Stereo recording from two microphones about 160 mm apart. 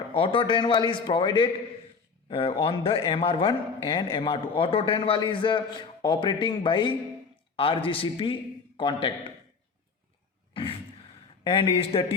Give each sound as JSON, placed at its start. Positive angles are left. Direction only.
{"t": 0.1, "sound": "a man's voice", "side_deg": 30}
{"t": 10.5, "sound": "a sound", "side_deg": 35}
{"t": 11.4, "sound": "a man's voice", "side_deg": 35}